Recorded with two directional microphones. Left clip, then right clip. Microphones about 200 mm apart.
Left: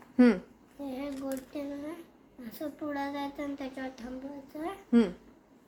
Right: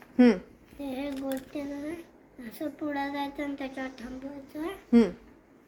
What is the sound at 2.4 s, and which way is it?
Speech, 20° left (ahead or behind).